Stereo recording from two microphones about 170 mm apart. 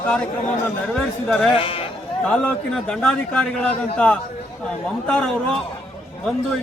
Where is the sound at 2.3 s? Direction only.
5° left (ahead or behind).